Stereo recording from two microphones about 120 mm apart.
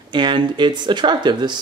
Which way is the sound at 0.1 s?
40° right (ahead or behind).